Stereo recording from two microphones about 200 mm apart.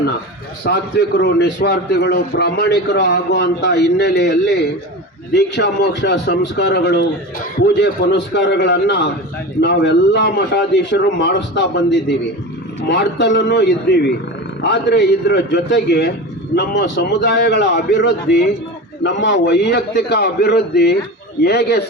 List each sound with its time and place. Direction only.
0.6 s a man's voice: 55° left (ahead or behind)